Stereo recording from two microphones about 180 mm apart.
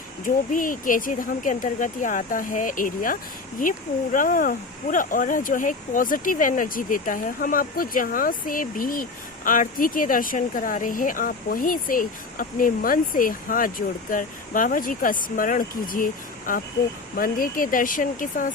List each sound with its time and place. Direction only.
0.5 s speech: 50° left (ahead or behind)